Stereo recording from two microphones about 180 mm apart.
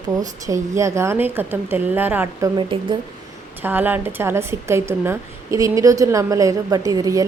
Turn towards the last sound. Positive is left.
turn(degrees=-20)  # may be behind; listen again after turning